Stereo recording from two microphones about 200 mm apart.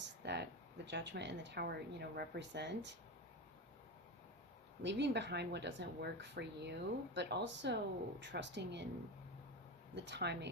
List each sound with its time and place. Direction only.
0.0 s a sound: 60° right (ahead or behind)
0.9 s speech: 60° right (ahead or behind)
4.8 s speech: 60° right (ahead or behind)
9.9 s speech: 60° right (ahead or behind)